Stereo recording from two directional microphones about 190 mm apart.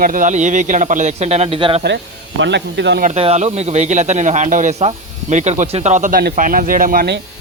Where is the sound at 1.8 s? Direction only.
65° right (ahead or behind).